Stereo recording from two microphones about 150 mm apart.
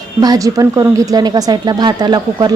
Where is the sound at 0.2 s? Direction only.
25° right (ahead or behind).